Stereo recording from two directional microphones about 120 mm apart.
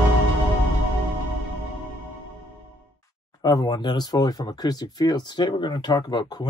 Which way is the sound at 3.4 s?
35° left (ahead or behind).